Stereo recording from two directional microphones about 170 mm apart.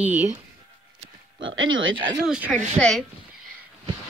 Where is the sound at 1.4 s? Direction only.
90° right.